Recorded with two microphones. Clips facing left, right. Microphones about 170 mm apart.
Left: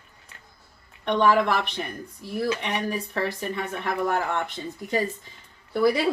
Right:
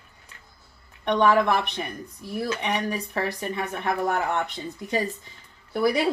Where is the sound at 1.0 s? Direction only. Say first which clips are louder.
Even; 15° right (ahead or behind).